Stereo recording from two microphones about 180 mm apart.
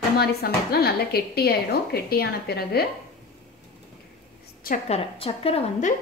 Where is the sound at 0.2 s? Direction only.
60° left (ahead or behind).